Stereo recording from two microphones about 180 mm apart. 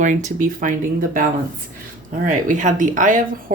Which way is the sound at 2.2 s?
45° right (ahead or behind).